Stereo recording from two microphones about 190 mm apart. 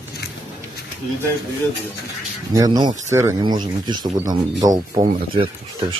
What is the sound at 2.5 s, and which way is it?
Speech, 20° right (ahead or behind).